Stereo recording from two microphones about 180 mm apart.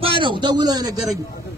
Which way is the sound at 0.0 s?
30° right (ahead or behind).